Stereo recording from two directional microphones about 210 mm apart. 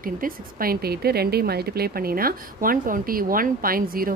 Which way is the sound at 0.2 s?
45° right (ahead or behind).